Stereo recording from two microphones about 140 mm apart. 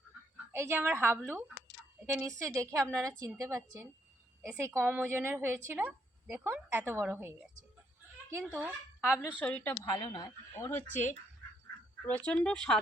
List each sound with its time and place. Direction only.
0.5 s a woman's voice: 15° right (ahead or behind)
2.0 s a woman's voice: 20° right (ahead or behind)
8.5 s a woman's voice: 10° right (ahead or behind)
9.4 s speech: 10° left (ahead or behind)
9.9 s speech: 30° left (ahead or behind); by 12.8 s 5° left (ahead or behind)